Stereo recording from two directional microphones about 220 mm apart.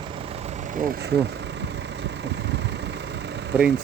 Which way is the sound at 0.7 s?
40° right (ahead or behind).